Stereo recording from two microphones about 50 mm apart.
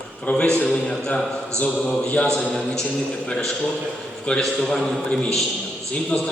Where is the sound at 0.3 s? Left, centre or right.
Left.